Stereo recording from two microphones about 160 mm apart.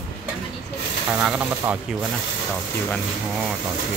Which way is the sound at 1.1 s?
10° right (ahead or behind).